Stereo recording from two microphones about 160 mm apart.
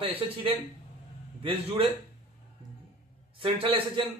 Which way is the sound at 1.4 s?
35° right (ahead or behind).